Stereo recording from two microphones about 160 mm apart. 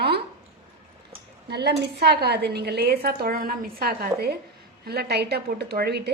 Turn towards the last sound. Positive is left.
turn(degrees=-90)